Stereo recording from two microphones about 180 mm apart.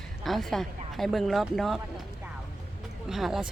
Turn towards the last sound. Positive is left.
turn(degrees=0)  # may be behind; listen again after turning